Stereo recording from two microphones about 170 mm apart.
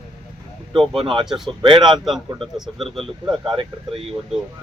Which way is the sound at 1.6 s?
30° right (ahead or behind).